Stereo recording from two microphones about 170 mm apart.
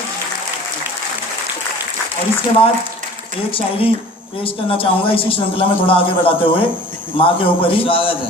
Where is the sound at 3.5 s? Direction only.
30° left (ahead or behind).